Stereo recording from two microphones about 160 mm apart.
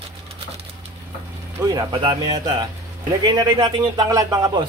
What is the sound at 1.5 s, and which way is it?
Speech, 25° right (ahead or behind).